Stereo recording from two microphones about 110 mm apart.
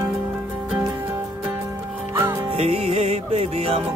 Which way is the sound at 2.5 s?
65° right (ahead or behind).